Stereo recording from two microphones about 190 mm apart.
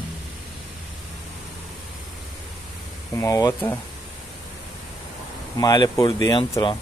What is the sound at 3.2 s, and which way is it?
Speech, 15° left (ahead or behind).